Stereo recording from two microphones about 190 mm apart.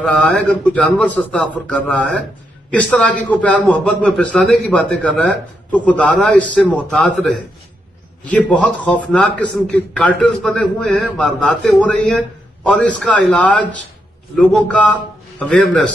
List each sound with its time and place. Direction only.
0.0 s a man's voice: 5° left (ahead or behind)